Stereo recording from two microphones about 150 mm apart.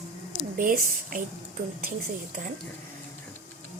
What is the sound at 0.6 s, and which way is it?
Speech, 65° right (ahead or behind).